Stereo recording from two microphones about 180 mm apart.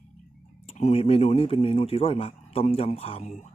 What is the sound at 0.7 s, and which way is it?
Speech, 35° left (ahead or behind).